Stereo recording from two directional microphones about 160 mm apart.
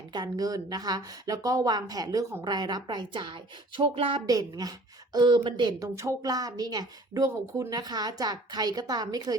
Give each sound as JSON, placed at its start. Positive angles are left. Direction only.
{"t": 0.1, "sound": "speech", "side_deg": -25}
{"t": 4.3, "sound": "speech", "side_deg": -25}